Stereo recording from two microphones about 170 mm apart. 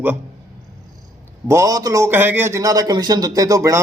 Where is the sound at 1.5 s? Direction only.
20° right (ahead or behind).